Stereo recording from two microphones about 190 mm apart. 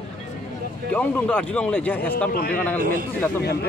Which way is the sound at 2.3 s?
55° left (ahead or behind).